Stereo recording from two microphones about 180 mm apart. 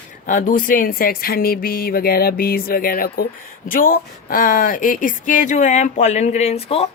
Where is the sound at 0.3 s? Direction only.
50° left (ahead or behind).